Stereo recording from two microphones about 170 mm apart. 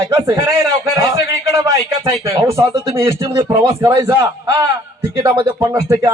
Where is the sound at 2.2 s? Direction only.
15° right (ahead or behind).